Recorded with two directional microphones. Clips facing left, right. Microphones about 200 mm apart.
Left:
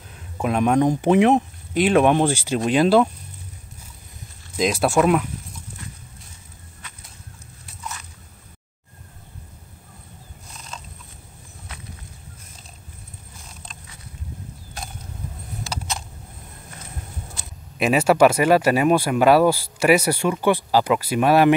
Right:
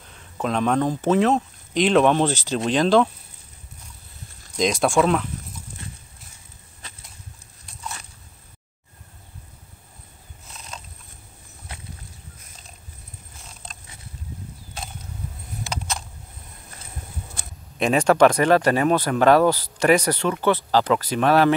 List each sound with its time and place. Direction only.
0.1 s speech: 10° left (ahead or behind)
4.6 s speech: 5° left (ahead or behind)
17.7 s speech: 5° left (ahead or behind)